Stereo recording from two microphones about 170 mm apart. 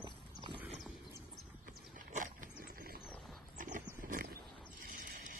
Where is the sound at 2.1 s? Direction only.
50° right (ahead or behind).